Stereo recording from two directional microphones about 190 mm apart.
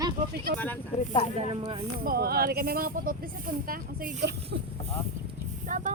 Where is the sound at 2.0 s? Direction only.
55° right (ahead or behind).